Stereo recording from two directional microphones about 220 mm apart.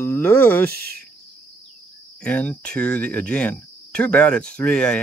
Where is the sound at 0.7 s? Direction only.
45° right (ahead or behind).